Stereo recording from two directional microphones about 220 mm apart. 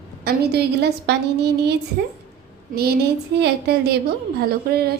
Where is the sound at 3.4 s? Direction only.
45° right (ahead or behind).